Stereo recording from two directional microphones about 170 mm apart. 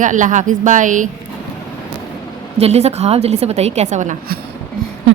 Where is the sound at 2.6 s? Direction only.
40° right (ahead or behind).